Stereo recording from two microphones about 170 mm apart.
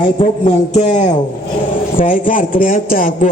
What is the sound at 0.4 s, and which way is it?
A man's voice, 40° left (ahead or behind).